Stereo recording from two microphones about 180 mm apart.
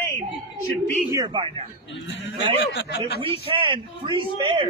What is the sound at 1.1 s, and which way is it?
Speech, 20° right (ahead or behind).